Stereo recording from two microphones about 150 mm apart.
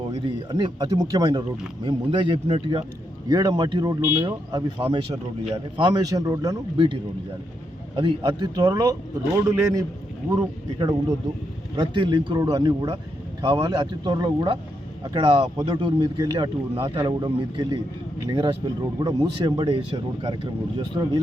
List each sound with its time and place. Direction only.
0.1 s speech: 30° right (ahead or behind)
4.0 s speech: 15° right (ahead or behind)
4.3 s speech: 35° right (ahead or behind)
6.7 s speech: 35° right (ahead or behind); by 9.8 s 20° right (ahead or behind)
11.8 s speech: 30° right (ahead or behind)